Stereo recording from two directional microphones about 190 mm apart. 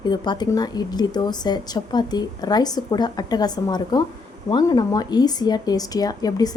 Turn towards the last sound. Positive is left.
turn(degrees=20)  # may be behind; listen again after turning